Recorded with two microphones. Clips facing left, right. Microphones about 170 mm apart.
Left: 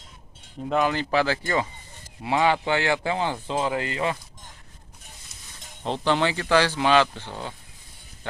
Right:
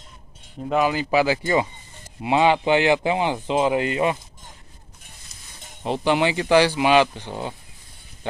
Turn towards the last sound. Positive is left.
turn(degrees=-15)  # may be behind; listen again after turning